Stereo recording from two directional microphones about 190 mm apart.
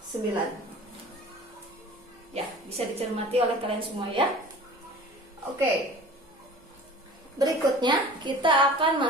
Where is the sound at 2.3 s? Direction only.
30° right (ahead or behind).